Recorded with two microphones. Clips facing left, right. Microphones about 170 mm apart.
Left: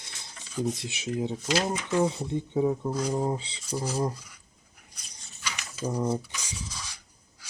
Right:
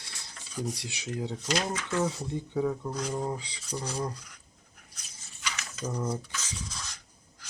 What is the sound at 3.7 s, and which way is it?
Speech, 5° left (ahead or behind).